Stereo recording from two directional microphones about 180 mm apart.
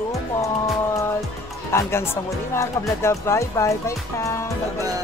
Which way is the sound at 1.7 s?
15° left (ahead or behind).